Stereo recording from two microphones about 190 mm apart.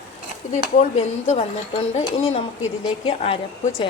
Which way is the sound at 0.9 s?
35° left (ahead or behind).